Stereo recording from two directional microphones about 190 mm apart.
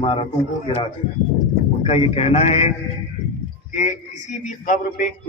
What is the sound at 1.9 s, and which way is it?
Speech, 35° left (ahead or behind).